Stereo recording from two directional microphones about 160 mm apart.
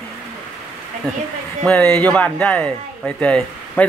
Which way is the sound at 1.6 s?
5° left (ahead or behind).